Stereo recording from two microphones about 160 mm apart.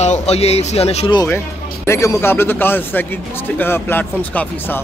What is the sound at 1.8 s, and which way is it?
Speech, 15° left (ahead or behind).